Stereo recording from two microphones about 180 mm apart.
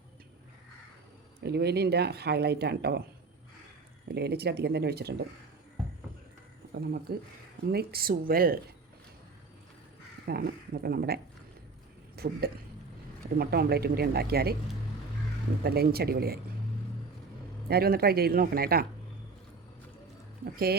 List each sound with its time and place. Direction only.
1.5 s speech: 65° right (ahead or behind)
4.1 s speech: 65° right (ahead or behind)
6.7 s speech: 60° right (ahead or behind)
10.2 s speech: 60° right (ahead or behind)
12.1 s a sound: 60° right (ahead or behind)
13.4 s speech: 60° right (ahead or behind)
15.6 s speech: 60° right (ahead or behind)
17.7 s speech: 60° right (ahead or behind)
20.4 s speech: 55° right (ahead or behind)